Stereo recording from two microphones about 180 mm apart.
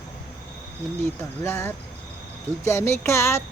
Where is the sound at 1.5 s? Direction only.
15° left (ahead or behind).